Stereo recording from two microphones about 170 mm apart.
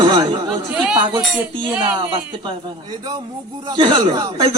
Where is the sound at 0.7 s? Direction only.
5° right (ahead or behind).